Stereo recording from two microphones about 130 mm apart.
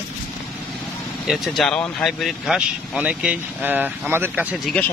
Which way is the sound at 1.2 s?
Centre (ahead or behind).